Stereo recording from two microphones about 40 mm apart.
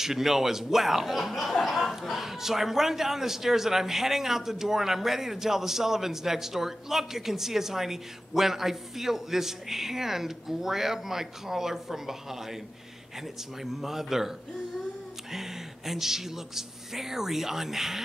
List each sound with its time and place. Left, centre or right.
0.0 s a man's voice: centre
13.6 s a man's voice: centre
15.3 s a man's voice: centre